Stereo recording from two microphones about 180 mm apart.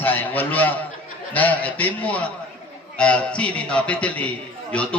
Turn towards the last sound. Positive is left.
turn(degrees=5)  # may be behind; listen again after turning